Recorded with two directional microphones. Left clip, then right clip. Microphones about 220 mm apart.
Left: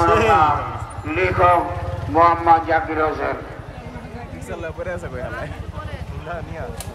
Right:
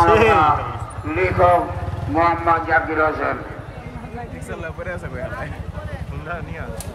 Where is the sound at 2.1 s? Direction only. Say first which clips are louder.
Left 3 dB; 45° left (ahead or behind).